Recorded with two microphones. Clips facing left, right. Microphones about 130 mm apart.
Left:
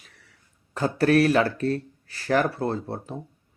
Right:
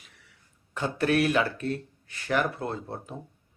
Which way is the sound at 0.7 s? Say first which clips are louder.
Left 5 dB; 40° left (ahead or behind).